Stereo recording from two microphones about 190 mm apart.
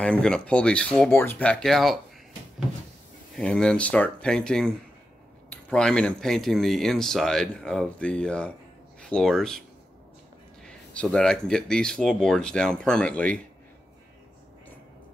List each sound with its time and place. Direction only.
0.0 s speech: 5° left (ahead or behind)
3.3 s speech: 5° left (ahead or behind)
10.6 s speech: 5° left (ahead or behind)